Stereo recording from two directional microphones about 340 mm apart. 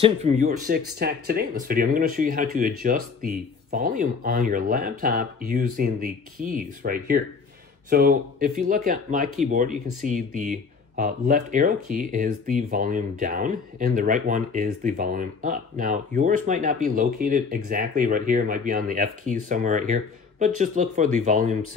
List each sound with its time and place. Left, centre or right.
0.0 s speech: centre